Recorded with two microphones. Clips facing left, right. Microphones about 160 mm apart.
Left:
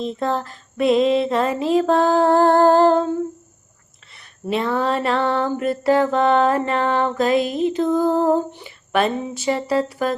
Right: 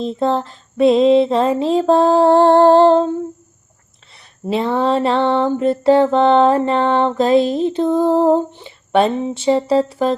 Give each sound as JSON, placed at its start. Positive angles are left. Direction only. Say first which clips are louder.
{"t": 0.0, "sound": "mantra", "louder": "right 5 dB", "side_deg": -30}
{"t": 4.4, "sound": "mantra", "louder": "right 4 dB", "side_deg": -30}